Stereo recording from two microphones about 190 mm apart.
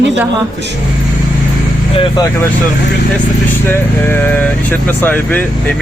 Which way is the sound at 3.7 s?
10° left (ahead or behind).